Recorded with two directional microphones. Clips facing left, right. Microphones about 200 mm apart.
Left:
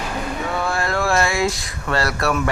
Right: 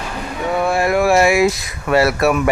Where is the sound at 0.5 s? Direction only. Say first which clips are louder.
Right 8 dB; 20° right (ahead or behind).